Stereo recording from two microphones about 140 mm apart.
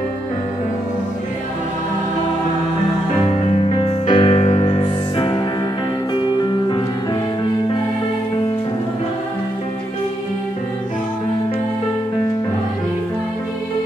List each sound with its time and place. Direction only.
3.4 s music: 50° left (ahead or behind)